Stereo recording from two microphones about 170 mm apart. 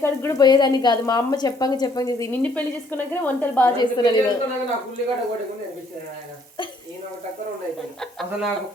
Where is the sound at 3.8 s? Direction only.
25° left (ahead or behind).